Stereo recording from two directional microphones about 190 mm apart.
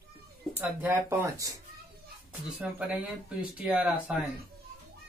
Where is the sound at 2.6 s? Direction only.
5° right (ahead or behind).